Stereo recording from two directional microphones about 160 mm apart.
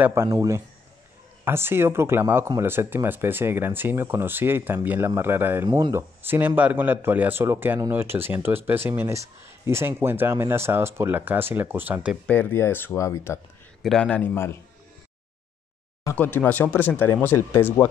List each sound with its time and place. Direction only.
0.0 s speech: 15° right (ahead or behind)
12.3 s speech: 10° left (ahead or behind)
13.8 s speech: 5° left (ahead or behind)
16.0 s speech: 15° left (ahead or behind)